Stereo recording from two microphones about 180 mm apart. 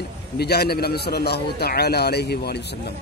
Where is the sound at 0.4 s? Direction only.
60° left (ahead or behind).